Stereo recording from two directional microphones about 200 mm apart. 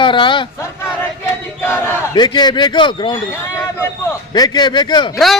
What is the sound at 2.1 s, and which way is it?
A man's voice, 20° left (ahead or behind).